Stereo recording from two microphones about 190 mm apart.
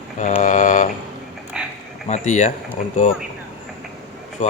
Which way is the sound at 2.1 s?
40° left (ahead or behind).